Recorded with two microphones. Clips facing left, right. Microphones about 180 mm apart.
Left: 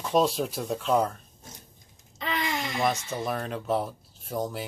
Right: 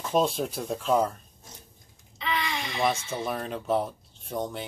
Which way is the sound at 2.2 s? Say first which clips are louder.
Left 1 dB; 45° left (ahead or behind).